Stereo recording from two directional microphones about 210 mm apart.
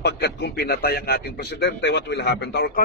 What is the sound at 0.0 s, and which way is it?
A man's voice, 50° left (ahead or behind).